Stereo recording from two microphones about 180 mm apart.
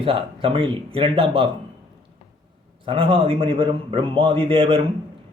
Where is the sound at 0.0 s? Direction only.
30° right (ahead or behind).